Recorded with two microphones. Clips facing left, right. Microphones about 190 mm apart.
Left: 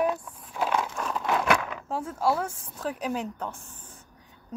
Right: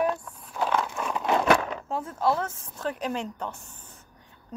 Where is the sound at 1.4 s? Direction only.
35° right (ahead or behind).